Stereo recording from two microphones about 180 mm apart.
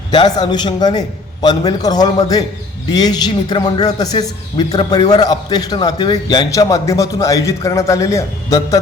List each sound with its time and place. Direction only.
0.1 s a man's voice: 25° left (ahead or behind)